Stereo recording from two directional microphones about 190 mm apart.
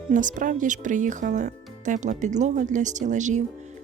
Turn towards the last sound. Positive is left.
turn(degrees=-40)  # may be behind; listen again after turning